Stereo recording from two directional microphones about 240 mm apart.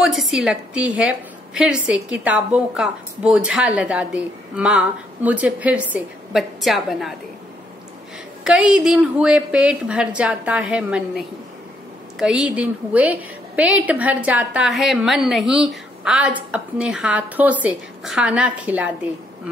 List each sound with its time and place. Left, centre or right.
0.0 s a woman's voice: centre
8.5 s a woman's voice: centre